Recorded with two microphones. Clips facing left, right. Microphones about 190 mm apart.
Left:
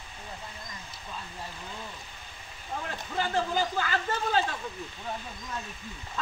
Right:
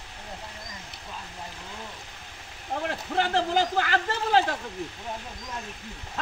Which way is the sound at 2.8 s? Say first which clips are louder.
Right 5 dB; 75° right (ahead or behind).